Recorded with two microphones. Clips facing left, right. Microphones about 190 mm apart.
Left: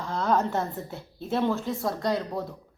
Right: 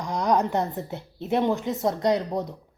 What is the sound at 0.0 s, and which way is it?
A woman's voice, 15° right (ahead or behind).